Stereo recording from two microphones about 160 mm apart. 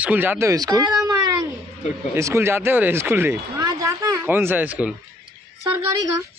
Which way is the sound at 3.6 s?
20° right (ahead or behind).